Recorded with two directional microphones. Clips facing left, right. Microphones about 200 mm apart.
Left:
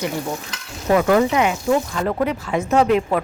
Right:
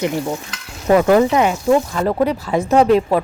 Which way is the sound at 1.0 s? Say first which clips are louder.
Right 3 dB; 30° right (ahead or behind).